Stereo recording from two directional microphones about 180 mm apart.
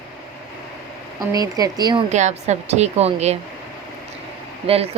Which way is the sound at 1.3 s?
20° right (ahead or behind).